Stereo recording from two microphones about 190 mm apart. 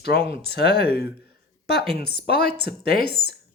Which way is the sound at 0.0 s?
60° left (ahead or behind).